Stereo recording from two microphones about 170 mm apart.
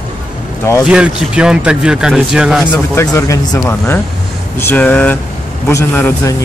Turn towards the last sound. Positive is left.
turn(degrees=10)  # may be behind; listen again after turning